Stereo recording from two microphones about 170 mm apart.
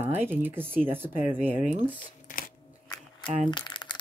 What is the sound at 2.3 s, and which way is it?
Crunch, 55° left (ahead or behind).